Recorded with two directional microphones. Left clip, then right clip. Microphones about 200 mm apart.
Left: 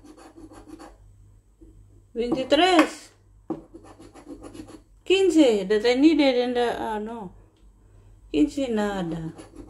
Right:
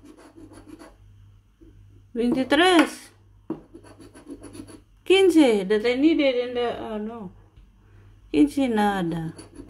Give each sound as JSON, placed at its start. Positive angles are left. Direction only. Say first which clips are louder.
{"t": 2.1, "sound": "speech", "louder": "even", "side_deg": -25}
{"t": 5.0, "sound": "speech", "louder": "right 2 dB", "side_deg": -25}
{"t": 5.8, "sound": "a woman's voice", "louder": "left 2 dB", "side_deg": -5}
{"t": 8.3, "sound": "speech", "louder": "right 2 dB", "side_deg": -25}